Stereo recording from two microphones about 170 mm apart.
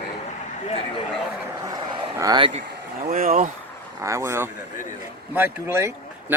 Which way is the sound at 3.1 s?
55° right (ahead or behind).